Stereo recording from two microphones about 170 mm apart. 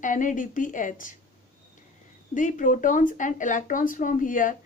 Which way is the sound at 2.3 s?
50° left (ahead or behind).